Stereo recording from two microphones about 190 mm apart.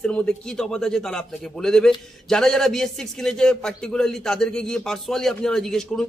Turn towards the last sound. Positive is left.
turn(degrees=0)  # may be behind; listen again after turning